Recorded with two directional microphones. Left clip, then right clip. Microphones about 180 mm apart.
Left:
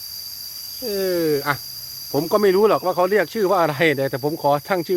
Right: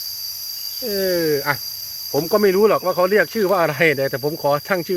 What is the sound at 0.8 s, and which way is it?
Speech, 15° left (ahead or behind).